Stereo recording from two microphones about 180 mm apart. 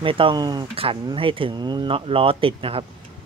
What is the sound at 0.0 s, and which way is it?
Speech, 30° right (ahead or behind).